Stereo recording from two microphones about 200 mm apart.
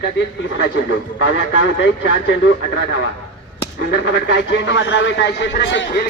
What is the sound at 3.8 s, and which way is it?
Speech, 55° left (ahead or behind).